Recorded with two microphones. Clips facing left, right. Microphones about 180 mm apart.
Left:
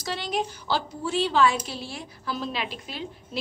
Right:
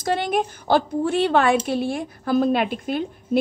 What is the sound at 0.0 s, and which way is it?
A woman's voice, 55° right (ahead or behind).